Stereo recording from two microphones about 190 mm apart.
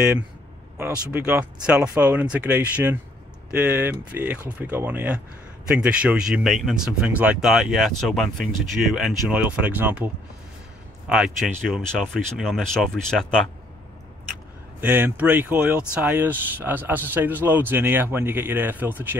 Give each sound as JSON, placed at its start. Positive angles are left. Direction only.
{"t": 0.7, "sound": "a man's voice", "side_deg": -10}
{"t": 14.8, "sound": "a man's voice", "side_deg": -10}